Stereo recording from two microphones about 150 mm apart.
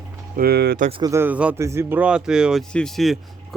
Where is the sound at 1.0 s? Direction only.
15° right (ahead or behind).